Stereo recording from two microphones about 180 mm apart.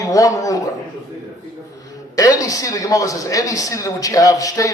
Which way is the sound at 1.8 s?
20° left (ahead or behind).